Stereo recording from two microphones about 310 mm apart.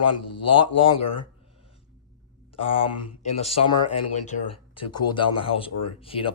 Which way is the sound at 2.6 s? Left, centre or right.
Centre.